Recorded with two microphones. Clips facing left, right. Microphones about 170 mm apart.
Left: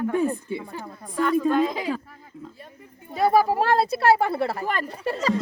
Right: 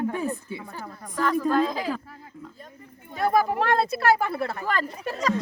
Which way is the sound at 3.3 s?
30° left (ahead or behind).